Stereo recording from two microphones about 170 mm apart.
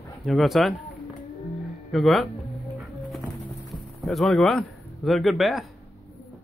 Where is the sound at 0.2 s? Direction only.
Centre (ahead or behind).